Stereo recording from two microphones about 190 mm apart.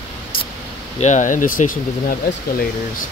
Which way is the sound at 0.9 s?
40° left (ahead or behind).